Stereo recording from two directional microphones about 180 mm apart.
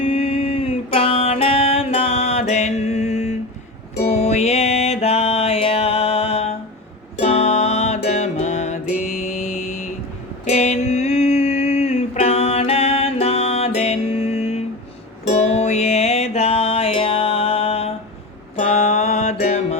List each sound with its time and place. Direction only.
0.0 s music: 30° left (ahead or behind)
10.4 s a sound: 40° left (ahead or behind)
15.3 s music: 35° left (ahead or behind)